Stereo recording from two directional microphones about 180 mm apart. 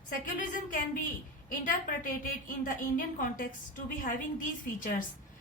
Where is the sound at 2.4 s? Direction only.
50° left (ahead or behind).